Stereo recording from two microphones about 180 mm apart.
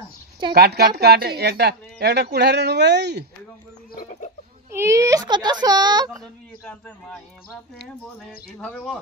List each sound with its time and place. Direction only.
0.6 s speech: 60° right (ahead or behind)
3.9 s chicken: 40° left (ahead or behind)
4.6 s speech: 15° right (ahead or behind)
8.2 s speech: 5° left (ahead or behind)